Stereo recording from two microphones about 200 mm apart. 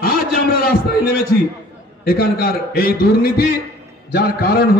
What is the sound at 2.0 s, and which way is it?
A man's voice, 50° left (ahead or behind).